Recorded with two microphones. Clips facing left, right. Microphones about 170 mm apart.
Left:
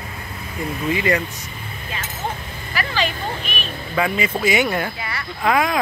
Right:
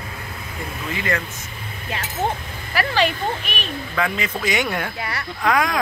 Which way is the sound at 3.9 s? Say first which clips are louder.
Left 4 dB; 10° left (ahead or behind).